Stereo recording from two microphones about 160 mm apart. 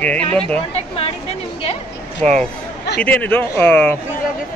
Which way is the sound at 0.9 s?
40° left (ahead or behind).